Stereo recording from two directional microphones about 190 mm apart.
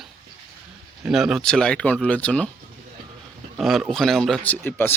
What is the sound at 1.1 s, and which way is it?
Speech, centre (ahead or behind).